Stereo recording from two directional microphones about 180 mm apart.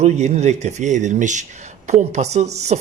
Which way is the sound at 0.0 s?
40° right (ahead or behind).